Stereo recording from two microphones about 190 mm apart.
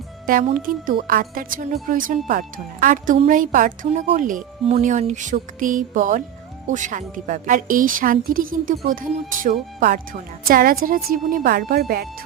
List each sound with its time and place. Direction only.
0.4 s speech: 45° right (ahead or behind)